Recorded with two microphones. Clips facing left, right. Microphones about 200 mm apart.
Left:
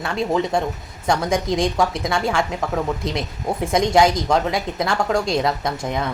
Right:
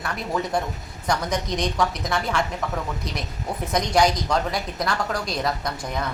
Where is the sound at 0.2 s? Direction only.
25° left (ahead or behind).